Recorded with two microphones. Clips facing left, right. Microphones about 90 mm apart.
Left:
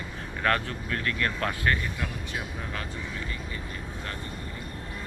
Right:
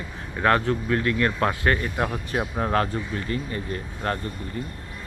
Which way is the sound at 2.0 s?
50° right (ahead or behind).